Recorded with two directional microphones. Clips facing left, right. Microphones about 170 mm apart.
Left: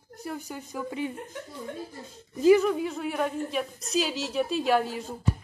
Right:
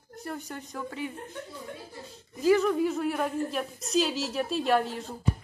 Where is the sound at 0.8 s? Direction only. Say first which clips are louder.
Left 4 dB; 20° left (ahead or behind).